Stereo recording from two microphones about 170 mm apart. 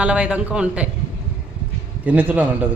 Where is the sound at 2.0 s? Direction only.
10° right (ahead or behind).